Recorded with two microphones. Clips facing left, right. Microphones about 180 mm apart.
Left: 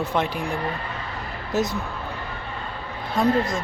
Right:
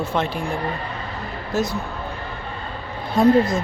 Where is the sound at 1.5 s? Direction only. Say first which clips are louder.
Right 1 dB; 20° left (ahead or behind).